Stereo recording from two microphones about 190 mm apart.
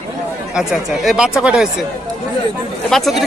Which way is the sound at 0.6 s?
5° right (ahead or behind).